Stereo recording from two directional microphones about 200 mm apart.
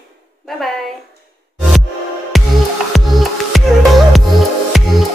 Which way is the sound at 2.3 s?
Centre (ahead or behind).